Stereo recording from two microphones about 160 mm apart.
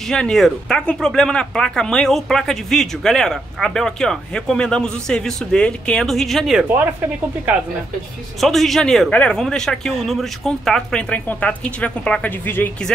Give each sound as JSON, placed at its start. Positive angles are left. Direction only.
{"t": 0.1, "sound": "speech", "side_deg": 5}
{"t": 8.4, "sound": "speech", "side_deg": 0}